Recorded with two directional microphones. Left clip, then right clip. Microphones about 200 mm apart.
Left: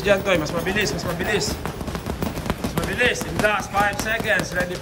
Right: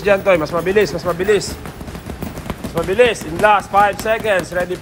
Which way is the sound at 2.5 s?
5° right (ahead or behind).